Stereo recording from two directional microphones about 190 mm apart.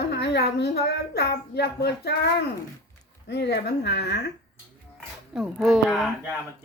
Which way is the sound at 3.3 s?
60° left (ahead or behind).